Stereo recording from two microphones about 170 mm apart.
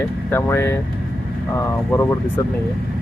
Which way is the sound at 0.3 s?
15° left (ahead or behind).